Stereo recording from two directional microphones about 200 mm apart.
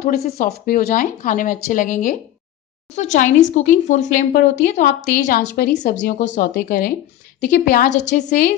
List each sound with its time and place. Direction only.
0.0 s speech: 50° left (ahead or behind)